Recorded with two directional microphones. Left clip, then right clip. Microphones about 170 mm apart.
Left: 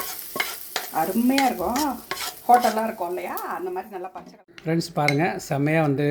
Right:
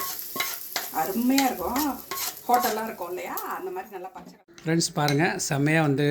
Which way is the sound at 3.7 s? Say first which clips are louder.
Left 4 dB; 45° left (ahead or behind).